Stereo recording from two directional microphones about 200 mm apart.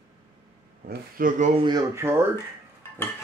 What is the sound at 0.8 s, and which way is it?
Speech, 45° right (ahead or behind).